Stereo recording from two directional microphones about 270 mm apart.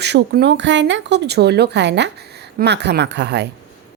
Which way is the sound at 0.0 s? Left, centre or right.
Right.